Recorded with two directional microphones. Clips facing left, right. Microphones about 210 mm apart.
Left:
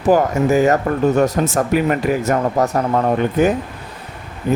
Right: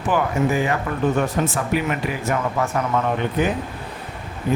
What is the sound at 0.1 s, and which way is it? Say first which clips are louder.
Speech: left 6 dB; 40° left (ahead or behind).